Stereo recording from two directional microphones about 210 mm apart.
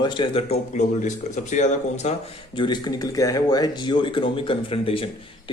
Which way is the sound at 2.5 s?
20° left (ahead or behind).